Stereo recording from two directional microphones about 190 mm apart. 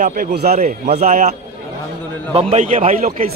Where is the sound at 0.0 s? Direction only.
50° right (ahead or behind).